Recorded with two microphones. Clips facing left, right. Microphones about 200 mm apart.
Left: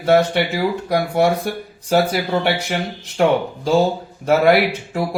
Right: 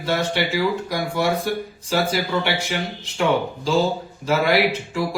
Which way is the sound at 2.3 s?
50° left (ahead or behind).